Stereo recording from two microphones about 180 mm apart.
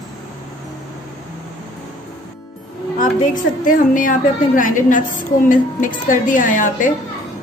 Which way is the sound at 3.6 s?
50° left (ahead or behind).